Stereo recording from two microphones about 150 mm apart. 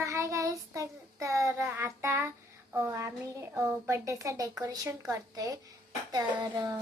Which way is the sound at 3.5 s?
15° right (ahead or behind).